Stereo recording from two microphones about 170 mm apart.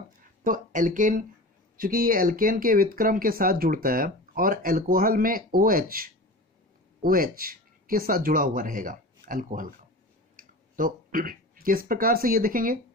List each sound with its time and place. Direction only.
0.4 s speech: 55° right (ahead or behind)